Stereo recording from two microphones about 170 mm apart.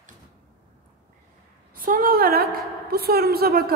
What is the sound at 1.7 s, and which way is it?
A woman's voice, 55° right (ahead or behind).